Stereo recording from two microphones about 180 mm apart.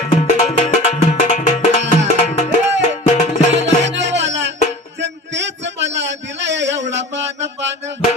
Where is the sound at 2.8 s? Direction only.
40° left (ahead or behind).